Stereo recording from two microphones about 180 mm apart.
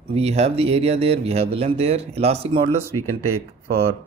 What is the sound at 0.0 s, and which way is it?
Speech, 35° right (ahead or behind).